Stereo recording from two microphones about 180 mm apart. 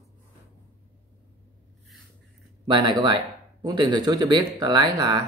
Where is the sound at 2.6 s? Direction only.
25° right (ahead or behind).